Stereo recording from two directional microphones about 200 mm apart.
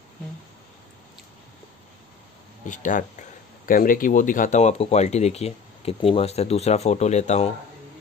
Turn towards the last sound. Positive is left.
turn(degrees=35)  # may be behind; listen again after turning